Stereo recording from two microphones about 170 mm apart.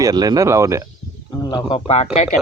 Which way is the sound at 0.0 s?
25° right (ahead or behind).